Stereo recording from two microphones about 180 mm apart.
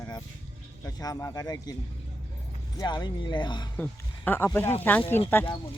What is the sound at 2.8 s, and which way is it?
Speech, 25° left (ahead or behind).